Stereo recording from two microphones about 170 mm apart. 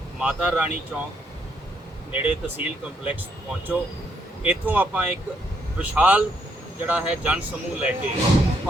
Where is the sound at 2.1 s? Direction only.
30° left (ahead or behind).